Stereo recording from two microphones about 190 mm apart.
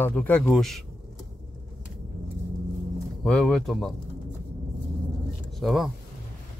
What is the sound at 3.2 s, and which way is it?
Speech, centre (ahead or behind).